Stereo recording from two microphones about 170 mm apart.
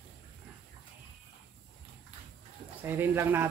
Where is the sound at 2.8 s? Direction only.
15° right (ahead or behind).